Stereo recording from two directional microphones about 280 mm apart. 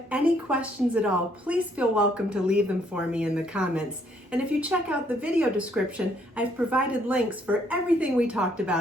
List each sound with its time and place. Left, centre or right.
0.1 s a woman's voice: centre